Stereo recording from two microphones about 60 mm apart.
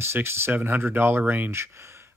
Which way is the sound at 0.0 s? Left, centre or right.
Right.